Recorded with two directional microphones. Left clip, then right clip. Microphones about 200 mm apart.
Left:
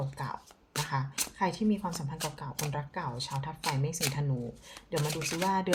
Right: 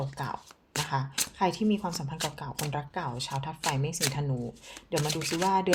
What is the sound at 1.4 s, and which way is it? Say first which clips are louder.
Speech: right 3 dB; 35° right (ahead or behind).